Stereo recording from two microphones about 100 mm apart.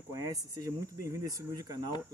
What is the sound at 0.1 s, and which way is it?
A man's voice, 35° right (ahead or behind).